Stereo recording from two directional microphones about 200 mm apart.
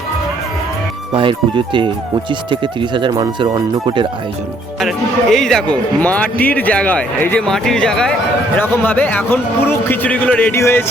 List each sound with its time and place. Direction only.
1.1 s speech: 25° right (ahead or behind)
4.8 s a man's voice: centre (ahead or behind)